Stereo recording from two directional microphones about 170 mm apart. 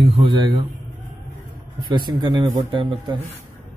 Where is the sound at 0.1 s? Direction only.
30° right (ahead or behind).